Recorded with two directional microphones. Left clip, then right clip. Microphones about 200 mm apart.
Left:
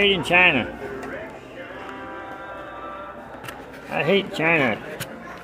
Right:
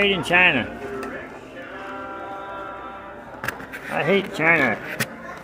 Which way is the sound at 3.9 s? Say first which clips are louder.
Even; 5° left (ahead or behind).